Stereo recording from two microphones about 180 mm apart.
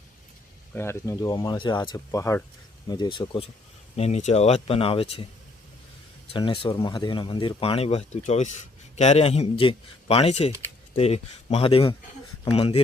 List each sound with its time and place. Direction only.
0.7 s speech: 15° left (ahead or behind)
3.9 s speech: 40° left (ahead or behind)
6.3 s speech: 30° left (ahead or behind)